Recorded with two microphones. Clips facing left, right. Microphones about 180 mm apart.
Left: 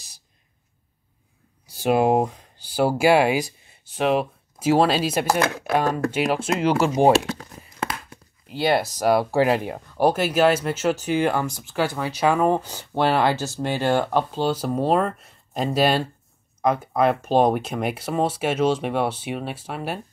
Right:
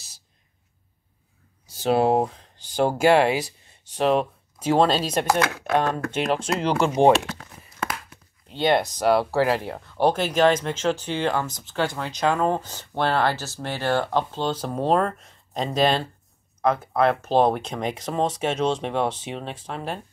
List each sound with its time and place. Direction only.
1.7 s speech: 10° left (ahead or behind)
7.8 s a sound: 30° left (ahead or behind)
8.5 s speech: 5° left (ahead or behind)